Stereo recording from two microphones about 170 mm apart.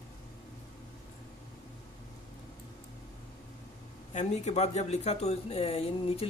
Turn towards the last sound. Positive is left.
turn(degrees=35)  # may be behind; listen again after turning